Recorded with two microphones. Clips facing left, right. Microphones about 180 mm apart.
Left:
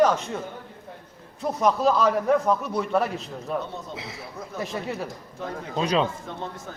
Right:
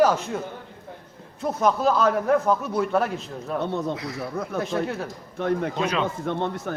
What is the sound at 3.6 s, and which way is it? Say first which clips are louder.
Speech: right 9 dB; 70° right (ahead or behind).